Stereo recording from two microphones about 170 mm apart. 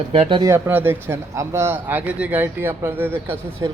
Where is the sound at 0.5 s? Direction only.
15° right (ahead or behind).